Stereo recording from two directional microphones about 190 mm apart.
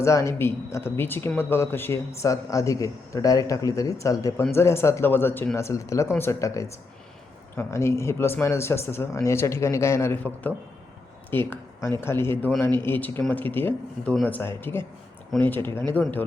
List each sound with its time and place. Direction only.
0.0 s speech: 15° left (ahead or behind)